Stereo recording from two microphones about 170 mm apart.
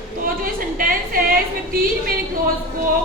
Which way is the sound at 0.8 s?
55° right (ahead or behind).